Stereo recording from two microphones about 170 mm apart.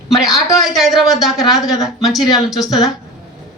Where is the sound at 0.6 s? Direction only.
Centre (ahead or behind).